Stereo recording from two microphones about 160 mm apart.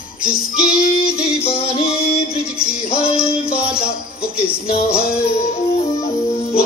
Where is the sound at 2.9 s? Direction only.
40° left (ahead or behind).